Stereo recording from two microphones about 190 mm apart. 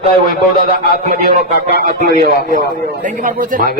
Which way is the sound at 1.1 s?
50° right (ahead or behind).